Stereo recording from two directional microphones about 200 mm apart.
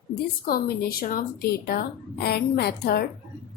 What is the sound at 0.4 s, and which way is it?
A woman's voice, 50° left (ahead or behind).